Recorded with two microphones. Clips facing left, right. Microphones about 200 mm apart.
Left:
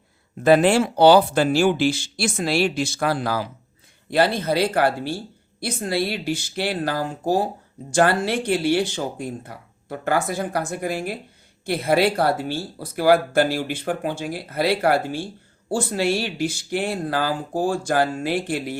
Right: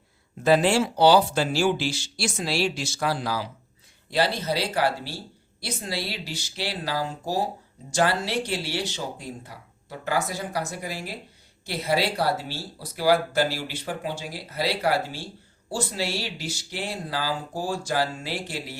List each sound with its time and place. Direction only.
0.4 s speech: 55° left (ahead or behind)